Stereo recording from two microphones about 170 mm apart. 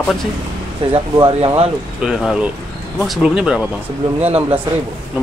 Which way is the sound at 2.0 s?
5° right (ahead or behind).